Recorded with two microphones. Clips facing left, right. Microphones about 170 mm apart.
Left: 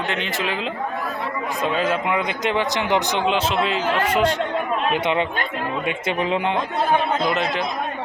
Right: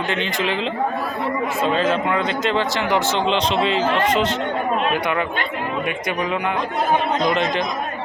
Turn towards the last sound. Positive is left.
turn(degrees=5)  # may be behind; listen again after turning